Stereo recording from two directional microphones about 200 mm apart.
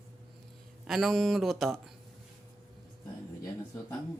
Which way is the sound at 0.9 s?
Centre (ahead or behind).